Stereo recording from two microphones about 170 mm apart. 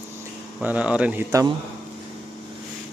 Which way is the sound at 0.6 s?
10° right (ahead or behind).